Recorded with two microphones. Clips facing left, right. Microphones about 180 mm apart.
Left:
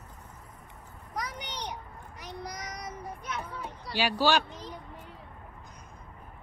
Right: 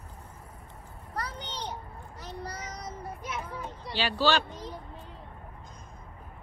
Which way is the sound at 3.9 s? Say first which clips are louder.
Left 1 dB; 10° left (ahead or behind).